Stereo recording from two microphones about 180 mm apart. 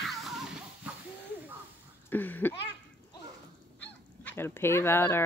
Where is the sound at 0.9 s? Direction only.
10° right (ahead or behind).